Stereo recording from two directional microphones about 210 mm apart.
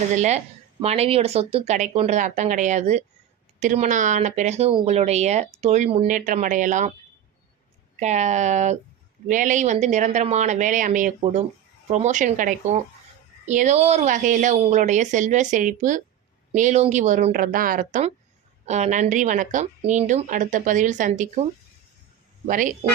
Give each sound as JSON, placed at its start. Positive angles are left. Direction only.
{"t": 0.1, "sound": "speech", "side_deg": -35}
{"t": 7.9, "sound": "speech", "side_deg": -35}
{"t": 22.4, "sound": "speech", "side_deg": -40}